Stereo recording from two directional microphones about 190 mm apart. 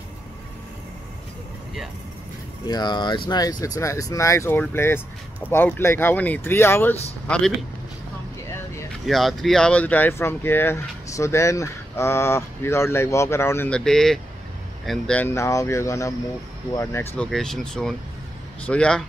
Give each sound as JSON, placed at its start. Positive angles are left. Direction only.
{"t": 2.7, "sound": "speech", "side_deg": 20}
{"t": 9.0, "sound": "speech", "side_deg": 0}